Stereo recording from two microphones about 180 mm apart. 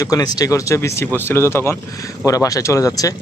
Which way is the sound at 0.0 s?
20° left (ahead or behind).